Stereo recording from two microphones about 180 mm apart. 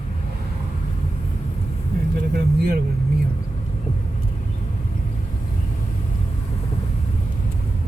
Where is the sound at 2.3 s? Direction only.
60° right (ahead or behind).